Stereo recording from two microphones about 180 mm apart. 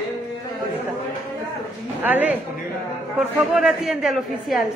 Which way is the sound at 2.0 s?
10° right (ahead or behind).